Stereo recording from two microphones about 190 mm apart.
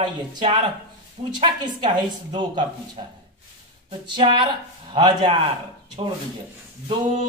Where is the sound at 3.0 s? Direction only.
25° right (ahead or behind).